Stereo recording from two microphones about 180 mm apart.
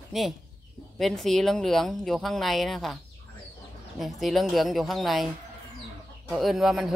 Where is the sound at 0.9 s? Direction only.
Centre (ahead or behind).